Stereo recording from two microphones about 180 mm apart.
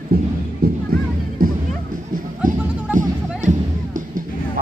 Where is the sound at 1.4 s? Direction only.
55° right (ahead or behind).